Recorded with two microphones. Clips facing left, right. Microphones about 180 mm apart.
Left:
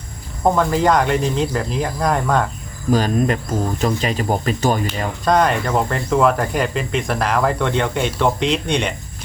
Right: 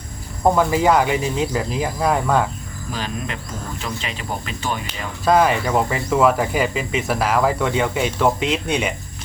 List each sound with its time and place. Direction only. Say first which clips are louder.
0.4 s speech: even; 5° right (ahead or behind)
2.9 s speech: left 11 dB; 45° left (ahead or behind)
5.2 s speech: right 1 dB; 5° right (ahead or behind)